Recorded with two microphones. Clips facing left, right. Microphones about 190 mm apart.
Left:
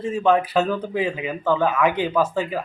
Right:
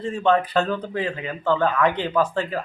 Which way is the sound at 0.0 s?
5° left (ahead or behind).